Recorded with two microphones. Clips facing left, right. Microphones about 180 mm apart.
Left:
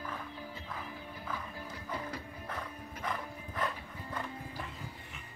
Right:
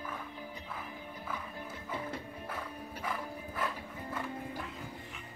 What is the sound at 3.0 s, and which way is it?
Music, 5° right (ahead or behind).